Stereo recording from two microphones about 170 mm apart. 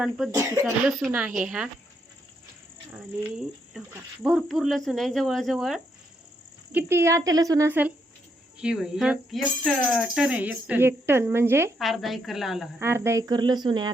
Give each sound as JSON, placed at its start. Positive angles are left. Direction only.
{"t": 0.3, "sound": "speech", "side_deg": -20}
{"t": 0.9, "sound": "speech", "side_deg": 0}
{"t": 2.9, "sound": "speech", "side_deg": -5}
{"t": 6.7, "sound": "speech", "side_deg": -15}
{"t": 11.8, "sound": "speech", "side_deg": 0}
{"t": 12.8, "sound": "speech", "side_deg": -15}